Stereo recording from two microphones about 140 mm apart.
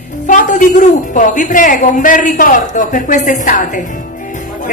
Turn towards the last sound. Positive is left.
turn(degrees=65)  # may be behind; listen again after turning